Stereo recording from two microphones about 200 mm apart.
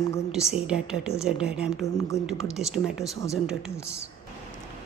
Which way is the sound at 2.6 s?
Centre (ahead or behind).